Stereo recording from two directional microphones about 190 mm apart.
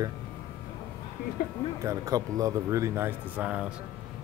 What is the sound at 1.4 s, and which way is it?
Speech, 50° left (ahead or behind).